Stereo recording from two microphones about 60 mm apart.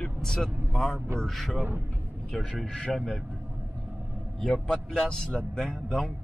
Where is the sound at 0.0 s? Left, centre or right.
Centre.